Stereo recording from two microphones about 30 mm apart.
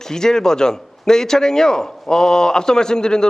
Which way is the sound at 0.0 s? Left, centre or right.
Centre.